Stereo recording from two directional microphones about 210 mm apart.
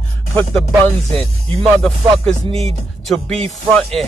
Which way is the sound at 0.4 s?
5° left (ahead or behind).